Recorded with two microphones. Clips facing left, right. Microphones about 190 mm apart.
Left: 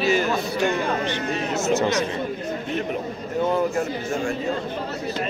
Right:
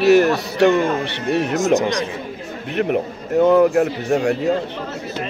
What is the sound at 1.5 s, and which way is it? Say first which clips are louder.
Speech: right 1 dB; 15° right (ahead or behind).